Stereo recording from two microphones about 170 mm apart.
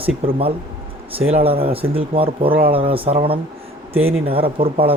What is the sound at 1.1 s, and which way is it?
Speech, 35° right (ahead or behind).